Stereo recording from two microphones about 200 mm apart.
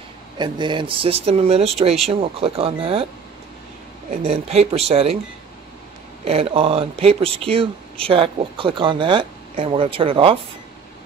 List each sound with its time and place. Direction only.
0.4 s speech: 20° right (ahead or behind)
4.1 s speech: 30° right (ahead or behind)
6.2 s speech: 30° right (ahead or behind)